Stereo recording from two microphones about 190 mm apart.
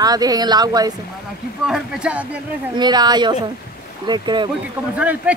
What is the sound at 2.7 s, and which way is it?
A woman's voice, 20° right (ahead or behind).